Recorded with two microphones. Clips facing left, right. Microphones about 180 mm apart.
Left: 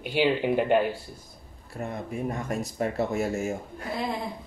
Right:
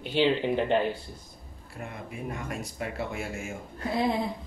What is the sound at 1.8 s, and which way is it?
Speech, 40° left (ahead or behind).